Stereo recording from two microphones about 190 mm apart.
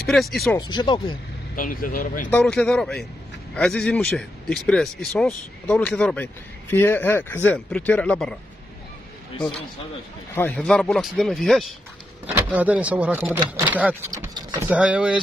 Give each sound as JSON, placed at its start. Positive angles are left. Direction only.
{"t": 0.0, "sound": "speech", "side_deg": 0}
{"t": 0.6, "sound": "speech", "side_deg": 25}
{"t": 1.5, "sound": "speech", "side_deg": 45}
{"t": 2.3, "sound": "speech", "side_deg": 5}
{"t": 10.3, "sound": "speech", "side_deg": 10}